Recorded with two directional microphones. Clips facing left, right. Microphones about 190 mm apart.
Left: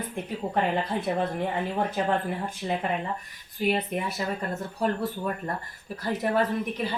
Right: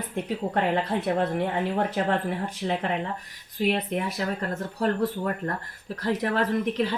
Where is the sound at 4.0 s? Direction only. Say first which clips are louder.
Right 2 dB; 90° right.